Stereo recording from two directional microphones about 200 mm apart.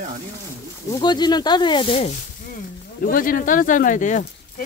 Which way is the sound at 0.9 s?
20° left (ahead or behind).